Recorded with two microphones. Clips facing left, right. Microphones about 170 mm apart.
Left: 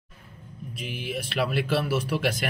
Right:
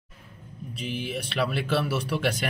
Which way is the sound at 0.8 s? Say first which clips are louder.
Right 1 dB; 5° left (ahead or behind).